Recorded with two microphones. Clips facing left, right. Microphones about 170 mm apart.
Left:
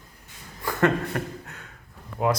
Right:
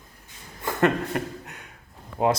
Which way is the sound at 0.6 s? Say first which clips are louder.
Even; 20° right (ahead or behind).